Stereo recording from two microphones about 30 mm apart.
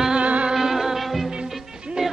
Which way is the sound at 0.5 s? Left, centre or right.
Centre.